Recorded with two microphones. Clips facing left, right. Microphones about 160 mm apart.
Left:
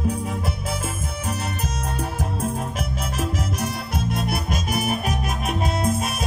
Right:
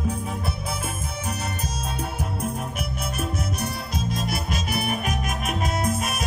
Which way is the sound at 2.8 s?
90° left.